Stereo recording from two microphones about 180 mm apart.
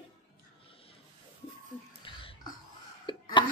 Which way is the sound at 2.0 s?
30° left (ahead or behind).